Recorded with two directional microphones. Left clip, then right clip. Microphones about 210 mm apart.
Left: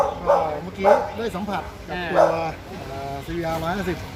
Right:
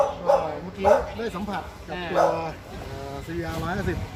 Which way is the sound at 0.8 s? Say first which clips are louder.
Left 2 dB; 5° left (ahead or behind).